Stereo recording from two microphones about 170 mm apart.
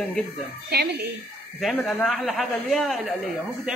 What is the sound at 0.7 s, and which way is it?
Speech, 70° right (ahead or behind).